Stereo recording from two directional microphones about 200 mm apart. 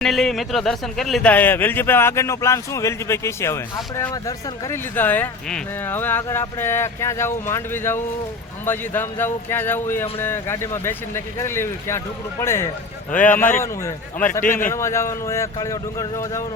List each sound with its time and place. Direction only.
0.0 s speech: centre (ahead or behind)
14.4 s a man's voice: 40° left (ahead or behind)
14.7 s speech: 15° left (ahead or behind)